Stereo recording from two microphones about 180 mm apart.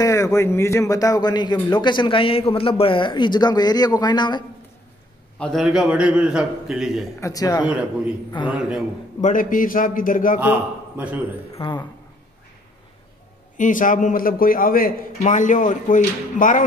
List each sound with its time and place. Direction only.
0.0 s a man's voice: 15° left (ahead or behind)
5.4 s a man's voice: centre (ahead or behind)
7.2 s a man's voice: 20° left (ahead or behind)
8.5 s a man's voice: 5° right (ahead or behind)
9.2 s a man's voice: 45° left (ahead or behind)
10.4 s a man's voice: 10° right (ahead or behind)
11.5 s speech: 25° left (ahead or behind)
13.6 s a man's voice: 45° left (ahead or behind)